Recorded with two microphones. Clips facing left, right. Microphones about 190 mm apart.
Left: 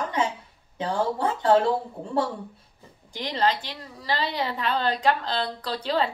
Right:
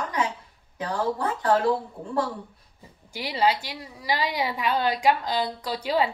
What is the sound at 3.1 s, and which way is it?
A woman's voice, 10° right (ahead or behind).